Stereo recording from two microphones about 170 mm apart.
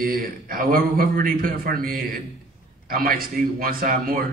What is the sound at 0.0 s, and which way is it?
A man's voice, 60° right (ahead or behind).